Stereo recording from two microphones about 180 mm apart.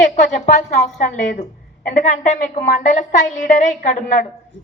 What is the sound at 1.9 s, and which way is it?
A woman's voice, 45° left (ahead or behind).